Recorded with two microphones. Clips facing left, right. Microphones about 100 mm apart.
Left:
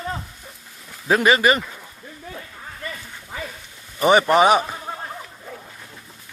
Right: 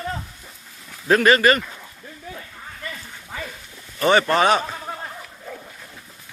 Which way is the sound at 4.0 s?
15° left (ahead or behind).